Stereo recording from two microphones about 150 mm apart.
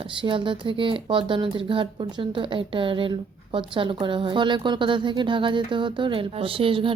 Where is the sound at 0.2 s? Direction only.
35° right (ahead or behind).